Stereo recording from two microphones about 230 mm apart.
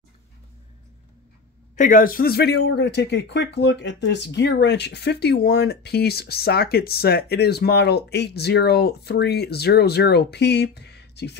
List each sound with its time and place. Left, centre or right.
1.8 s speech: left